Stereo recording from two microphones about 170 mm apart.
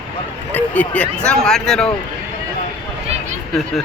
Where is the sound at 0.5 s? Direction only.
10° left (ahead or behind).